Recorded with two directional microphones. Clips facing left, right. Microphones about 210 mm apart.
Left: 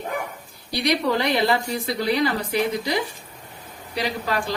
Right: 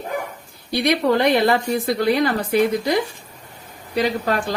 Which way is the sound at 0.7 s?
55° right (ahead or behind).